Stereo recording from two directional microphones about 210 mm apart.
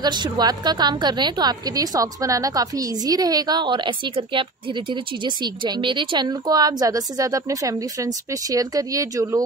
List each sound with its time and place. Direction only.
0.0 s a woman's voice: 20° right (ahead or behind)